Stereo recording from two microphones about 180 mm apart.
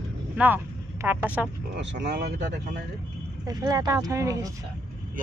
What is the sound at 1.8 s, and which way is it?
Speech, 75° right (ahead or behind).